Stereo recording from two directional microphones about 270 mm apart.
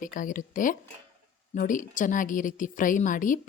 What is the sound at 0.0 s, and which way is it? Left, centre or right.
A woman's voice, left.